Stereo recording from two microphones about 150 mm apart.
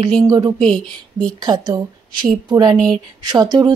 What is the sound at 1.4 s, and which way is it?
Speech, 30° right (ahead or behind).